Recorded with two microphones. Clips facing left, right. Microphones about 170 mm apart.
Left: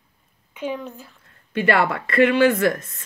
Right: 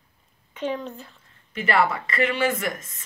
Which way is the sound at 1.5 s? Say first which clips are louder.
Left 3 dB; 65° left (ahead or behind).